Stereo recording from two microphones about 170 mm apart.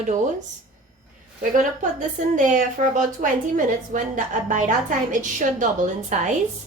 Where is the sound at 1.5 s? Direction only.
50° right (ahead or behind).